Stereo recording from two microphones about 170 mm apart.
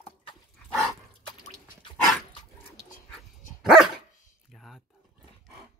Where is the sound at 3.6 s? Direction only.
5° right (ahead or behind).